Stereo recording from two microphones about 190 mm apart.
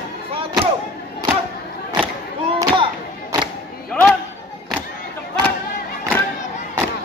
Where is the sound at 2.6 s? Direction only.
25° right (ahead or behind).